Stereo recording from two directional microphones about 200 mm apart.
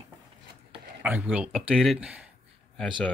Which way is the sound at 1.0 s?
5° right (ahead or behind).